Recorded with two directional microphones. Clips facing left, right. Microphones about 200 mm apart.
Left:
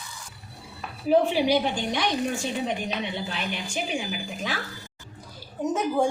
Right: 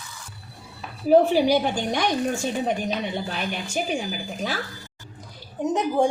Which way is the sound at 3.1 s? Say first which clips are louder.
Right 3 dB; 45° right (ahead or behind).